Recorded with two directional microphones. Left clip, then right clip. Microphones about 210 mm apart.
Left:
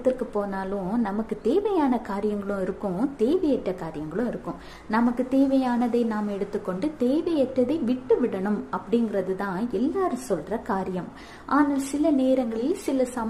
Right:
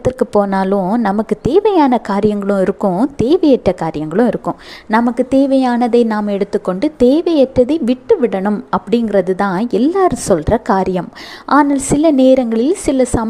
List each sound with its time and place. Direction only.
0.0 s a woman's voice: 40° right (ahead or behind)